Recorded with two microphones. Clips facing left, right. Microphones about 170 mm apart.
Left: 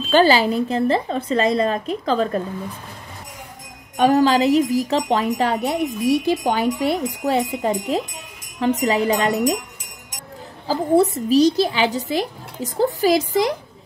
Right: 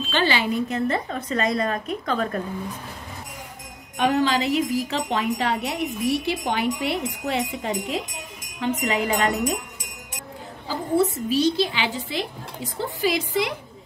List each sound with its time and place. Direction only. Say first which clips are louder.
0.1 s speech: left 8 dB; 40° left (ahead or behind)
3.9 s speech: left 6 dB; 40° left (ahead or behind)
10.7 s speech: left 5 dB; 40° left (ahead or behind)